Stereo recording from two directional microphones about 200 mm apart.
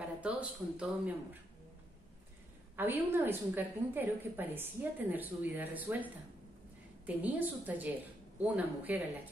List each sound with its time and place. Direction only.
0.2 s a woman's voice: 5° right (ahead or behind)
2.7 s a woman's voice: 10° right (ahead or behind)